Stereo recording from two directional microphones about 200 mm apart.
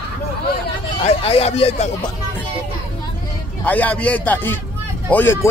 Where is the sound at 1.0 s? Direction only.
30° left (ahead or behind).